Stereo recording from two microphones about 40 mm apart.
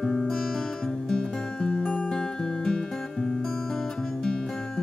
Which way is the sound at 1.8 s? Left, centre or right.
Left.